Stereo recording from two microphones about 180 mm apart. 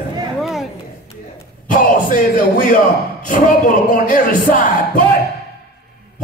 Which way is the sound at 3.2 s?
50° left (ahead or behind).